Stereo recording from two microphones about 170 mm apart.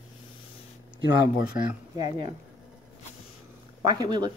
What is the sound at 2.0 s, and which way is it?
Speech, 25° right (ahead or behind).